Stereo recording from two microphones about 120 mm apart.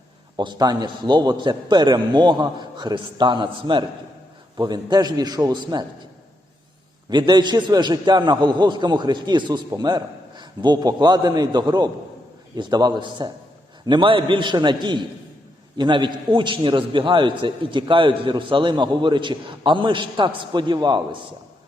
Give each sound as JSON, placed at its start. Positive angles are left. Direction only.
{"t": 0.3, "sound": "a man's voice", "side_deg": -35}
{"t": 7.1, "sound": "a man's voice", "side_deg": -40}